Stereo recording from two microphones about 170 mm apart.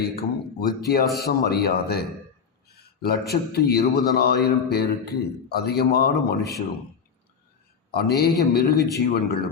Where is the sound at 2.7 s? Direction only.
70° left (ahead or behind).